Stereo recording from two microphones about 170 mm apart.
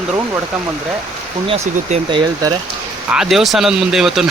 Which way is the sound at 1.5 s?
30° right (ahead or behind).